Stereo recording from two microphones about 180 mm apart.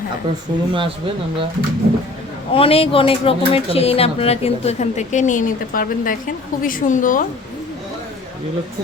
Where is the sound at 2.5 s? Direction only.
30° left (ahead or behind); by 7.3 s 50° left (ahead or behind).